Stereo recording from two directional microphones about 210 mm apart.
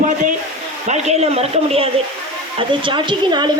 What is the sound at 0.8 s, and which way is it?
A man's voice, 30° right (ahead or behind).